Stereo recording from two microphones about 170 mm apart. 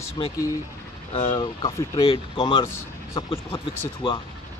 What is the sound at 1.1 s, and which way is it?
Speech, 35° left (ahead or behind).